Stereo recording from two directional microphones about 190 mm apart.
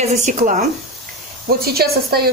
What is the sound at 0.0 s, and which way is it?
Speech, 40° right (ahead or behind).